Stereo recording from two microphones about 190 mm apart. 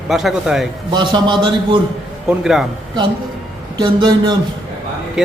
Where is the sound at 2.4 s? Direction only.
Centre (ahead or behind).